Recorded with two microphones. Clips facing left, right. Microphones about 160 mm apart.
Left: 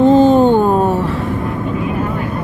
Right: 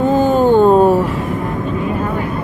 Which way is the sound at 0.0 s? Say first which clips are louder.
Left 5 dB; 10° right (ahead or behind).